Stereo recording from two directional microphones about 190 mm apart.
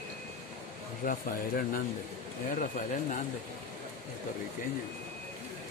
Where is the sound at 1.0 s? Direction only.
45° left (ahead or behind).